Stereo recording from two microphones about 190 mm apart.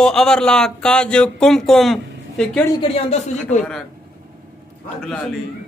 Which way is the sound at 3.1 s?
35° left (ahead or behind).